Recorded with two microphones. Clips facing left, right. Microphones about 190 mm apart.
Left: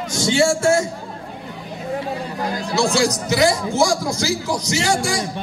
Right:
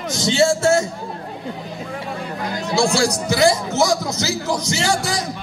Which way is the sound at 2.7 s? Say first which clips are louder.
Right 1 dB; 30° right (ahead or behind).